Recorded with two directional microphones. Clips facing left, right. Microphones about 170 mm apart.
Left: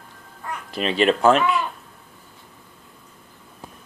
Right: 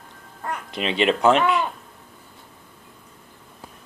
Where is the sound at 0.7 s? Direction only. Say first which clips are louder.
Left 2 dB; 20° right (ahead or behind).